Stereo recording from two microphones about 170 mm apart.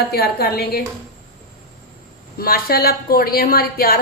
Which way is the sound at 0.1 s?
65° left (ahead or behind).